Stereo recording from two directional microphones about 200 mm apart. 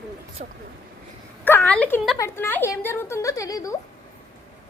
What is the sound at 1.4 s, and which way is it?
A woman's voice, 10° left (ahead or behind).